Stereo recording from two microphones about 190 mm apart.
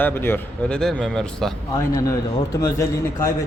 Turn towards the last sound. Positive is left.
turn(degrees=15)  # may be behind; listen again after turning